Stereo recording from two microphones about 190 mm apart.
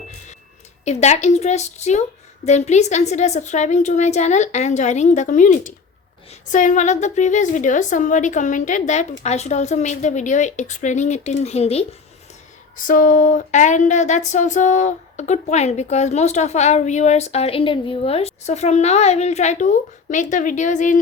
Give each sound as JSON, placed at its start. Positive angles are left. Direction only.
{"t": 0.9, "sound": "speech", "side_deg": 35}
{"t": 12.7, "sound": "speech", "side_deg": 45}